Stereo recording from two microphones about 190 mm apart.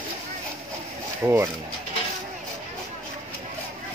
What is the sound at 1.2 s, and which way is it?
Speech, 15° right (ahead or behind).